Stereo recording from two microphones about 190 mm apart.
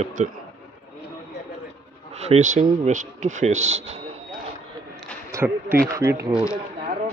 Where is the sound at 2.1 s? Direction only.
35° right (ahead or behind).